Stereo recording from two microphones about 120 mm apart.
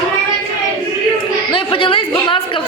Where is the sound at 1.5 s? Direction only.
50° left (ahead or behind).